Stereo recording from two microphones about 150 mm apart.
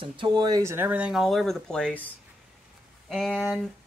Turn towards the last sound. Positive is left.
turn(degrees=0)  # may be behind; listen again after turning